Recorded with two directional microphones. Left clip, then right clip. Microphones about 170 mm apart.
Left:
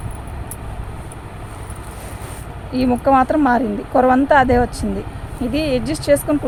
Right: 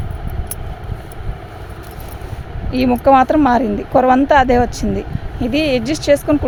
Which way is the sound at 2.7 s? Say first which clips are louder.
Right 3 dB; 45° right (ahead or behind).